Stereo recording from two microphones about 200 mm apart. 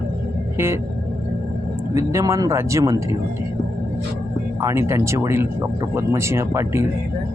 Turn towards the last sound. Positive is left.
turn(degrees=-15)  # may be behind; listen again after turning